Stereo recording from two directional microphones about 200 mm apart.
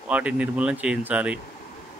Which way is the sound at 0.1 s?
5° right (ahead or behind).